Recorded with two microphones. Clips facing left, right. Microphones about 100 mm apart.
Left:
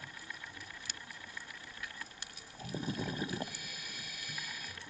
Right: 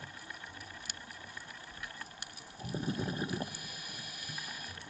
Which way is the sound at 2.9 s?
25° right (ahead or behind).